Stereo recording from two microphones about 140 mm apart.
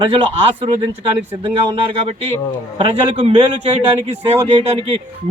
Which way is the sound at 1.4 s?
40° right (ahead or behind).